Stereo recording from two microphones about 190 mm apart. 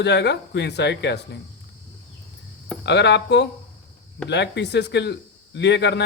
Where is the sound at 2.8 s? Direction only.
65° left (ahead or behind).